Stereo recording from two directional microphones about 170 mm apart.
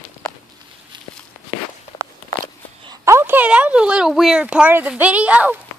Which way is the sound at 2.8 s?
20° right (ahead or behind).